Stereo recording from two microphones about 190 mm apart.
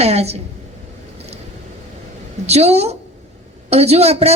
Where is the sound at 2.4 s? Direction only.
35° right (ahead or behind).